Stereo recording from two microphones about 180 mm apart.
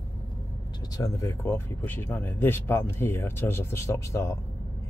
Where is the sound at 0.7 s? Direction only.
20° left (ahead or behind).